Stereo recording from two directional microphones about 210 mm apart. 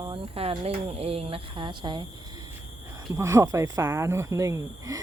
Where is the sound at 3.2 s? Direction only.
15° right (ahead or behind).